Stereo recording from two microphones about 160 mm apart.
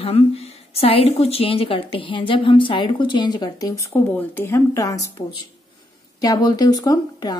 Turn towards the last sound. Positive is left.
turn(degrees=25)  # may be behind; listen again after turning